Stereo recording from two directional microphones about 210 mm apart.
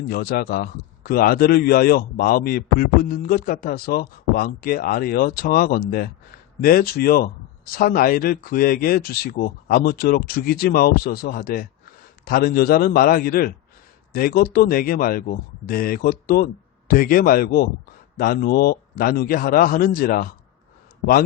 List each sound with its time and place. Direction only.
0.1 s a man's voice: 45° left (ahead or behind)